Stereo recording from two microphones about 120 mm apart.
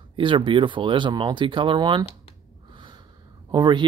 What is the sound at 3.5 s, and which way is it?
Speech, 40° right (ahead or behind).